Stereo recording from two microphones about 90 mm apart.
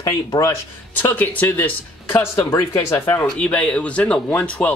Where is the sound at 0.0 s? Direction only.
40° left (ahead or behind).